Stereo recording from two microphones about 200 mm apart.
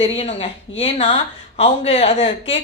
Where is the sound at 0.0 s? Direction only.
35° left (ahead or behind).